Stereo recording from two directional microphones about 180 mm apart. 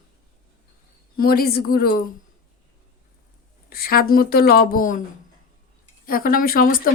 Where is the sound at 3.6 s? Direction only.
55° left (ahead or behind).